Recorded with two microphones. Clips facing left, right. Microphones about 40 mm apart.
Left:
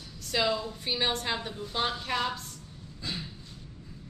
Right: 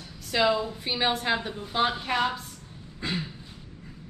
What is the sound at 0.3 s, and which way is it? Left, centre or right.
A woman's voice, centre.